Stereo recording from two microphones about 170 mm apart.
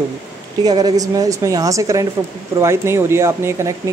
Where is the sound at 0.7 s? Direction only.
25° right (ahead or behind).